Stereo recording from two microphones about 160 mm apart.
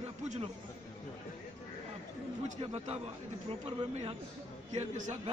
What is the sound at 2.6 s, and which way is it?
A man's voice, 40° right (ahead or behind).